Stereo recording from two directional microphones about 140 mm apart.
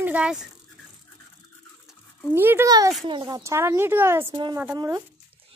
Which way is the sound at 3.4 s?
20° right (ahead or behind).